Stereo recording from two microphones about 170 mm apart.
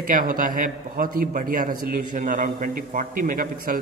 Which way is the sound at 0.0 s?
55° right (ahead or behind).